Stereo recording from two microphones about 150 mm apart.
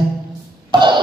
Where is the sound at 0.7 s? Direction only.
30° right (ahead or behind).